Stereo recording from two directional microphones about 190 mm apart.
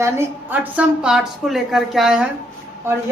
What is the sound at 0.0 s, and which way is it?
A woman's voice, 10° right (ahead or behind).